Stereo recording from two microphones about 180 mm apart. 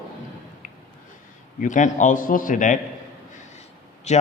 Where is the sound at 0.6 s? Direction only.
45° left (ahead or behind).